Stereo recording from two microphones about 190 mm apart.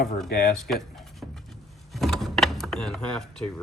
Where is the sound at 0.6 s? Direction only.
Centre (ahead or behind).